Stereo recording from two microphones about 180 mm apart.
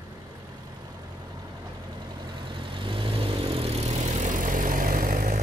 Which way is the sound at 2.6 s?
30° right (ahead or behind).